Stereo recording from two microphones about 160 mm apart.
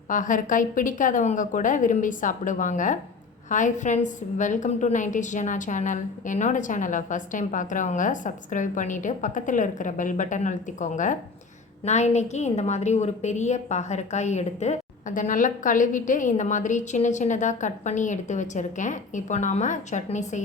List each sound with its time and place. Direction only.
0.1 s a woman's voice: 55° left (ahead or behind)